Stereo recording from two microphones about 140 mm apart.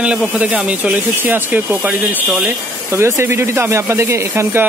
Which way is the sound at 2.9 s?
20° right (ahead or behind).